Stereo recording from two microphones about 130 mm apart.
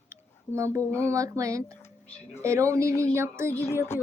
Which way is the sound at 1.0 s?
25° right (ahead or behind).